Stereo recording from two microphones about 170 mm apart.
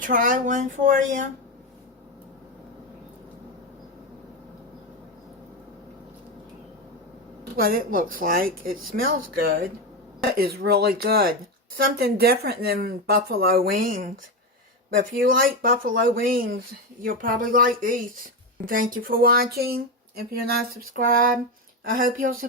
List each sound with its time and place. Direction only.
0.0 s speech: 50° right (ahead or behind)
7.5 s speech: 60° right (ahead or behind)